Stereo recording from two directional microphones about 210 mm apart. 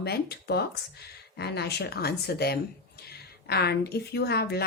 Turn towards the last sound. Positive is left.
turn(degrees=50)  # may be behind; listen again after turning